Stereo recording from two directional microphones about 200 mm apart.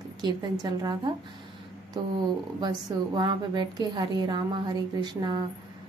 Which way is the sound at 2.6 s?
20° right (ahead or behind).